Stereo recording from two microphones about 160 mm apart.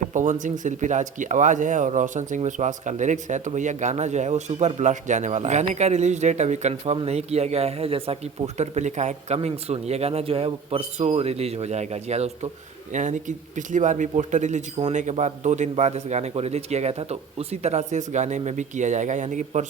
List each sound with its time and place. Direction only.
0.1 s speech: 50° right (ahead or behind)